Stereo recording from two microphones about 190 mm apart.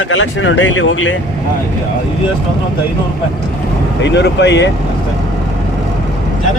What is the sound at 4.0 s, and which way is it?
Speech, 65° left (ahead or behind).